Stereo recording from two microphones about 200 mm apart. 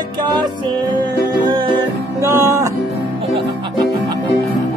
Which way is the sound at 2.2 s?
15° right (ahead or behind).